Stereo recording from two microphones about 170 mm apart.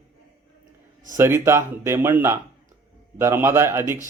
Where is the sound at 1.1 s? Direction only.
15° right (ahead or behind).